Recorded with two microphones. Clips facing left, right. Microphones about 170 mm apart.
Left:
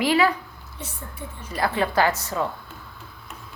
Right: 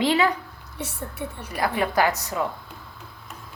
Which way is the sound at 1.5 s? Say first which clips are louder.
Left 1 dB; 15° right (ahead or behind).